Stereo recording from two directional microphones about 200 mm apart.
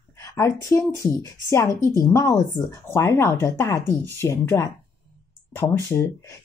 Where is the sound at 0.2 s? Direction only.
15° left (ahead or behind).